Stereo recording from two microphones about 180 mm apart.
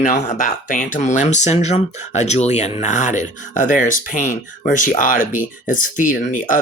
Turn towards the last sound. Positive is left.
turn(degrees=45)  # may be behind; listen again after turning